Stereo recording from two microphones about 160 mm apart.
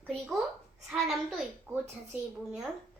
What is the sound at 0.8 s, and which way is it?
Speech, centre (ahead or behind).